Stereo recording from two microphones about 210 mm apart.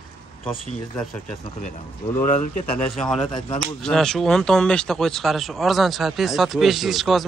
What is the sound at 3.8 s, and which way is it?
Speech, centre (ahead or behind).